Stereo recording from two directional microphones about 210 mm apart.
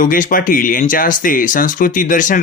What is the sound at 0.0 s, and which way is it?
Speech, 40° left (ahead or behind).